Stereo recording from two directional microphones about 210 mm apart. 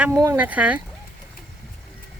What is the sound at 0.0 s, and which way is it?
Speech, 15° right (ahead or behind).